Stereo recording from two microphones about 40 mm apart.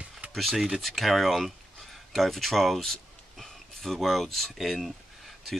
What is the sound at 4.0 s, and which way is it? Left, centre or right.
Speech, centre.